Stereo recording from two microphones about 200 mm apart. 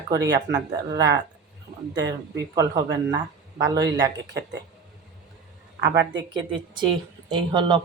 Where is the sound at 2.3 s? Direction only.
20° right (ahead or behind).